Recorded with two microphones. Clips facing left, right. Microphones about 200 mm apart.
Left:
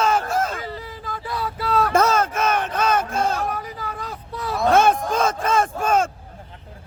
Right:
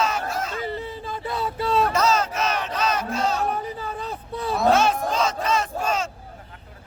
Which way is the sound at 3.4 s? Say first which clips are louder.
Right 1 dB; 30° right (ahead or behind).